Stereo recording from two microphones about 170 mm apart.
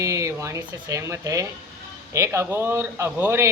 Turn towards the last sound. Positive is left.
turn(degrees=-10)  # may be behind; listen again after turning